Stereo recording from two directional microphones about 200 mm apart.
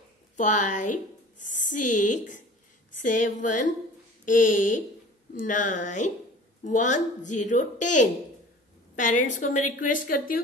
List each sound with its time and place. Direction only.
0.4 s a woman's voice: 40° left (ahead or behind)